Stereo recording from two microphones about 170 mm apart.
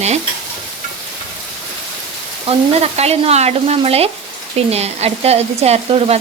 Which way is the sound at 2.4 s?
40° right (ahead or behind).